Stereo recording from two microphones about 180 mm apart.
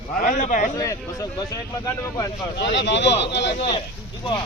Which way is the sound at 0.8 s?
20° left (ahead or behind).